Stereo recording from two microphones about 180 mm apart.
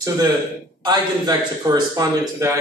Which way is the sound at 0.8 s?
20° right (ahead or behind).